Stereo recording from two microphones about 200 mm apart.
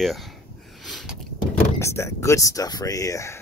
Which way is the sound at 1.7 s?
15° left (ahead or behind).